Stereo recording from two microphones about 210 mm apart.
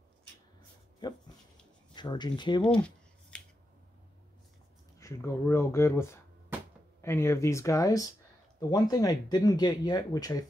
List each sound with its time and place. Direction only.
2.0 s speech: 20° left (ahead or behind)
2.8 s scissors: 5° left (ahead or behind)
4.9 s speech: 15° left (ahead or behind)